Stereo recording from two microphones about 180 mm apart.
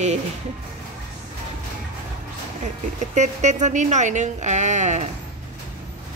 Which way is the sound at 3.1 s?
40° right (ahead or behind).